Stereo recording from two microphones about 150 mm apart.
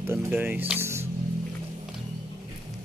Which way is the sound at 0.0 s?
15° right (ahead or behind).